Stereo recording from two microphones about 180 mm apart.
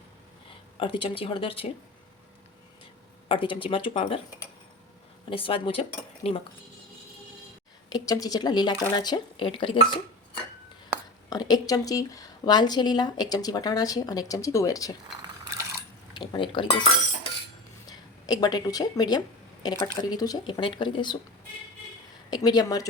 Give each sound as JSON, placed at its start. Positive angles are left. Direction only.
{"t": 0.8, "sound": "speech", "side_deg": 30}
{"t": 3.2, "sound": "speech", "side_deg": 30}
{"t": 5.3, "sound": "speech", "side_deg": 30}
{"t": 6.3, "sound": "cutlery", "side_deg": 35}
{"t": 7.9, "sound": "speech", "side_deg": 20}
{"t": 11.3, "sound": "speech", "side_deg": 20}
{"t": 16.1, "sound": "speech", "side_deg": 25}
{"t": 17.8, "sound": "speech", "side_deg": 20}
{"t": 22.3, "sound": "speech", "side_deg": 20}